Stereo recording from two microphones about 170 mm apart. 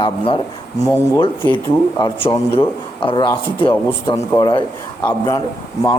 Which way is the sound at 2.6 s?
30° left (ahead or behind).